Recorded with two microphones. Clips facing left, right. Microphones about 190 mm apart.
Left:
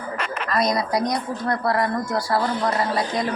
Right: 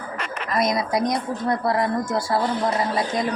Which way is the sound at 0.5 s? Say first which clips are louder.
Even; 25° right (ahead or behind).